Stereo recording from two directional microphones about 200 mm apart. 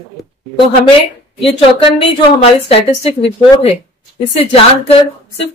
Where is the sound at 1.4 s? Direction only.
25° left (ahead or behind).